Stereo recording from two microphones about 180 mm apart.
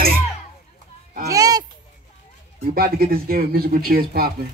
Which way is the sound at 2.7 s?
55° right (ahead or behind).